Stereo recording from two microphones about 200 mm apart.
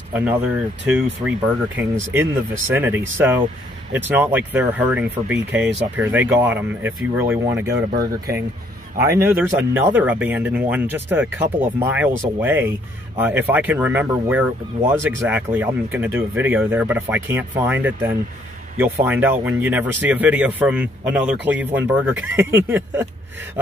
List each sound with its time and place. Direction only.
0.1 s speech: 10° right (ahead or behind)
7.9 s speech: 50° right (ahead or behind)
9.1 s speech: 10° right (ahead or behind)